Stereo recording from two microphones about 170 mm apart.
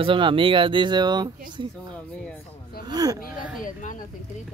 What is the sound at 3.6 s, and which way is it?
Speech, 50° left (ahead or behind).